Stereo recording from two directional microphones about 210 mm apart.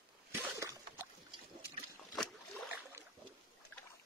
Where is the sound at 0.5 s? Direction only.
15° right (ahead or behind).